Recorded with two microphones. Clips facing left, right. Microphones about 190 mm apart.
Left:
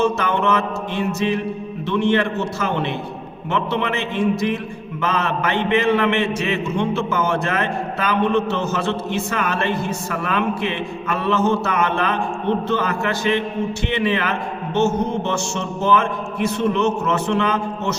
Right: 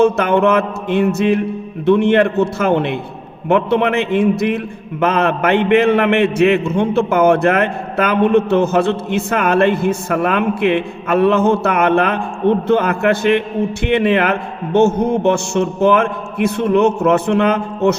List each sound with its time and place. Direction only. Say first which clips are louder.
0.0 s a man's voice: right 7 dB; 55° right (ahead or behind)